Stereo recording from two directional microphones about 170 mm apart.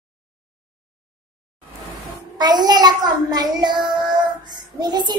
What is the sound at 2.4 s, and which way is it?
Child singing, 25° right (ahead or behind).